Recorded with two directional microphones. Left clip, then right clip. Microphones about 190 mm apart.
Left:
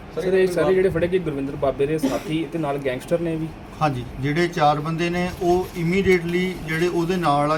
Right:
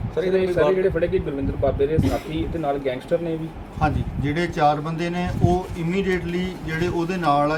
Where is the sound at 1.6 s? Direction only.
50° left (ahead or behind).